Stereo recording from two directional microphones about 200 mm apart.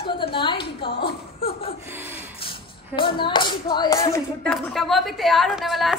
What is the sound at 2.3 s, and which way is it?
Speech, 25° left (ahead or behind).